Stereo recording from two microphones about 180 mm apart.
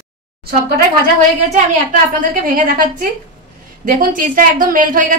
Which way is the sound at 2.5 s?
50° right (ahead or behind).